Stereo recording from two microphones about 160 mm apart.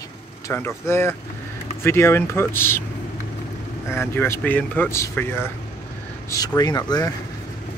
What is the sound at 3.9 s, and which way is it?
Speech, 15° left (ahead or behind).